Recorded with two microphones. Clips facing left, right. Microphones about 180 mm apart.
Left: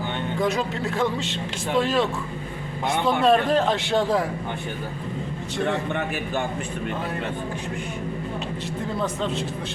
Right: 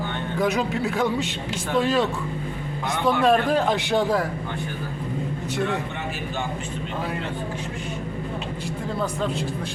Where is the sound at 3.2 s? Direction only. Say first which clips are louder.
Left 1 dB; 10° right (ahead or behind).